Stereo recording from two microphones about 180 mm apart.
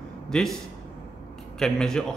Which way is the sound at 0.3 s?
Centre (ahead or behind).